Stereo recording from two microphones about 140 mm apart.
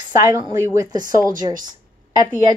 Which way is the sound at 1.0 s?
75° right (ahead or behind).